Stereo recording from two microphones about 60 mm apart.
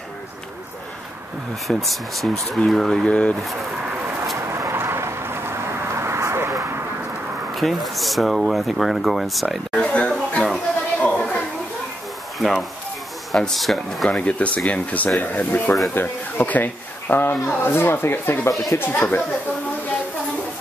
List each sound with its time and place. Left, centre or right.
1.7 s speech: centre
3.1 s speech: left
4.4 s vehicle: right
7.5 s speech: centre
9.8 s a sound: centre
12.4 s speech: centre
14.0 s speech: centre